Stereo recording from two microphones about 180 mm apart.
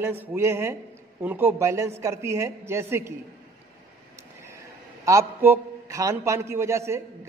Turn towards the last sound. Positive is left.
turn(degrees=-15)  # may be behind; listen again after turning